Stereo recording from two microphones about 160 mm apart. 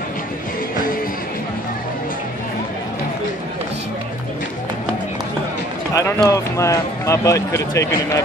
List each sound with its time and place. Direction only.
5.9 s speech: 20° left (ahead or behind)